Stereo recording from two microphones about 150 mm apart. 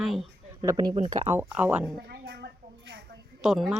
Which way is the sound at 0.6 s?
25° right (ahead or behind).